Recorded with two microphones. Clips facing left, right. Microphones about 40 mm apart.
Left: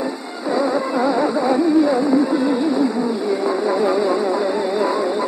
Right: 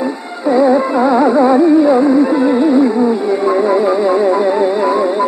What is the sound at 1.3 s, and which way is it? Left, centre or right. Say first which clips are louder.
Music: right 8 dB; right.